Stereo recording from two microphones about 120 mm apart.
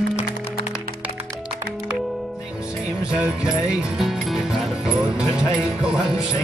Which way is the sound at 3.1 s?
5° right (ahead or behind).